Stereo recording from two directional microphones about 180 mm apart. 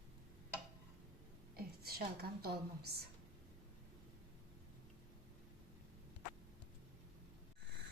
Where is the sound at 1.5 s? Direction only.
60° right (ahead or behind).